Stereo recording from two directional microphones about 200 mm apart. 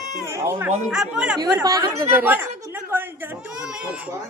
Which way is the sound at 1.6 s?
15° right (ahead or behind).